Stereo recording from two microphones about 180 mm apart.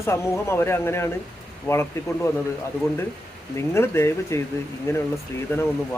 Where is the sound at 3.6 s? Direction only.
15° left (ahead or behind).